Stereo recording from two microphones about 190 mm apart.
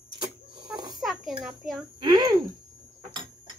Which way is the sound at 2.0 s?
20° right (ahead or behind).